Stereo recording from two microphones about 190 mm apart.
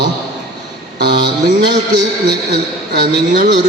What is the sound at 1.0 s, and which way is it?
A man's voice, 65° right (ahead or behind).